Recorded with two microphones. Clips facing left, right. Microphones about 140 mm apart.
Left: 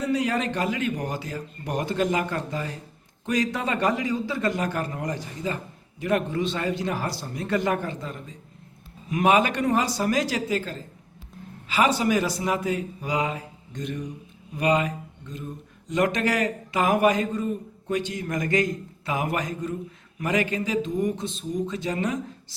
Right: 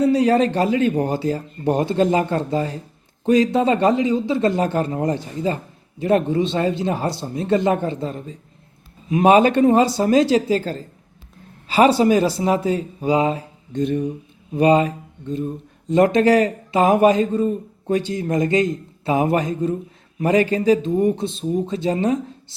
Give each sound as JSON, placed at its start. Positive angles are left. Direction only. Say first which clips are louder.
{"t": 0.0, "sound": "speech", "louder": "right 9 dB", "side_deg": -30}